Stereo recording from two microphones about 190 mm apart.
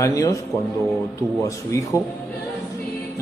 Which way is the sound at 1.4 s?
15° left (ahead or behind).